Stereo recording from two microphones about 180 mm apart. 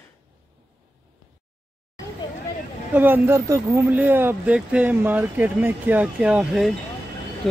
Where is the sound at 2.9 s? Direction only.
10° right (ahead or behind).